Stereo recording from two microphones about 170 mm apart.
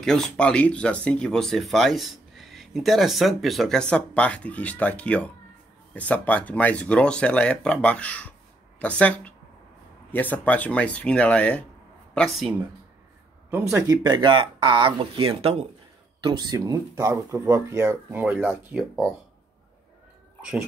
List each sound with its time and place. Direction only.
0.0 s speech: 5° left (ahead or behind)
10.3 s speech: 10° left (ahead or behind)
13.5 s speech: 15° right (ahead or behind)